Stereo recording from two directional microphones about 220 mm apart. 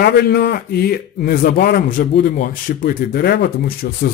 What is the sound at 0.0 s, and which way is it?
A man's voice, 45° left (ahead or behind).